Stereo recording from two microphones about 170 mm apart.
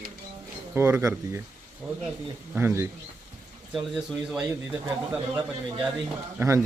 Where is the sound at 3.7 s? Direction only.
5° right (ahead or behind).